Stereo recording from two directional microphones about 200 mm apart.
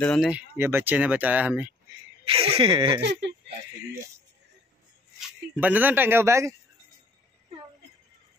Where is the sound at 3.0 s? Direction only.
60° right (ahead or behind).